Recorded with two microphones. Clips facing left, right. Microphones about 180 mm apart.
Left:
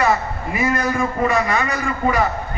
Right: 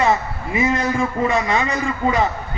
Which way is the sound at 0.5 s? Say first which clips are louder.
Right 1 dB; 25° right (ahead or behind).